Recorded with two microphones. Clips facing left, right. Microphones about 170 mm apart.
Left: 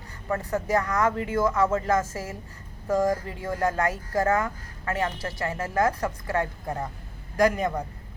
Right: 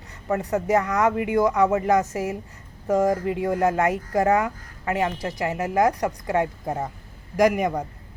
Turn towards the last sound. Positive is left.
turn(degrees=-20)  # may be behind; listen again after turning